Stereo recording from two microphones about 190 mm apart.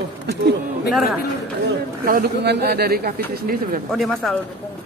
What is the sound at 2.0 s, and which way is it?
A man's voice, 55° right (ahead or behind).